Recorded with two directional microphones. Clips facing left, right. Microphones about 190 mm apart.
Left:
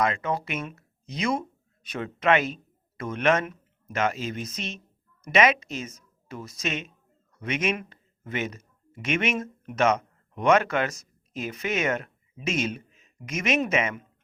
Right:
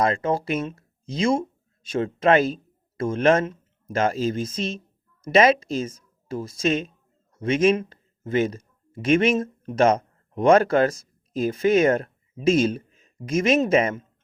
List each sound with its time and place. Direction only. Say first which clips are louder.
0.0 s speech: right 4 dB; 30° right (ahead or behind)